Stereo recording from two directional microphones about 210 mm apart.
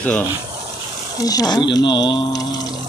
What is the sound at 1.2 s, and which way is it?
Speech, 15° left (ahead or behind).